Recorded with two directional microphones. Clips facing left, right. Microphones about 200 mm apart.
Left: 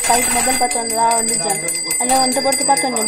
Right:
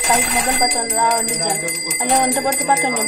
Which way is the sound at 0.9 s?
10° left (ahead or behind).